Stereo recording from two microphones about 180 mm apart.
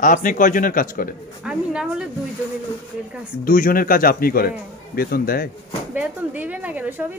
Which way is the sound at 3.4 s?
50° left (ahead or behind).